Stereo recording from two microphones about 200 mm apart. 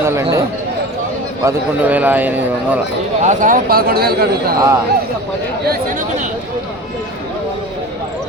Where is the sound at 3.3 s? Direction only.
40° right (ahead or behind).